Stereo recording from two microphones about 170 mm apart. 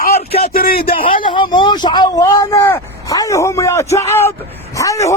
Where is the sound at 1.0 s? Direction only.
30° left (ahead or behind).